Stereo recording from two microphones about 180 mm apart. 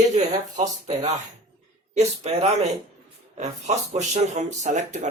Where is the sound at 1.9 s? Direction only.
40° right (ahead or behind).